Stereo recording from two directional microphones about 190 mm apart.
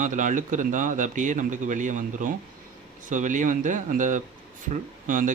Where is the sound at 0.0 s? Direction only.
40° right (ahead or behind).